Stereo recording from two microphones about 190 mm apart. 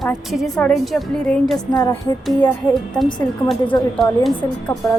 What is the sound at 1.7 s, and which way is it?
Speech, 25° left (ahead or behind).